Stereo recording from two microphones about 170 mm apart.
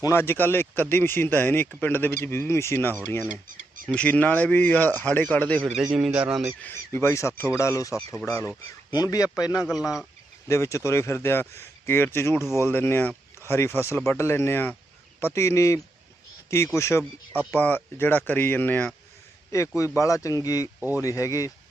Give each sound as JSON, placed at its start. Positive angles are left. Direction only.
{"t": 0.0, "sound": "speech", "side_deg": 15}
{"t": 6.6, "sound": "speech", "side_deg": 10}
{"t": 9.6, "sound": "speech", "side_deg": -5}
{"t": 10.5, "sound": "speech", "side_deg": 15}
{"t": 20.7, "sound": "speech", "side_deg": -10}
{"t": 21.0, "sound": "speech", "side_deg": 20}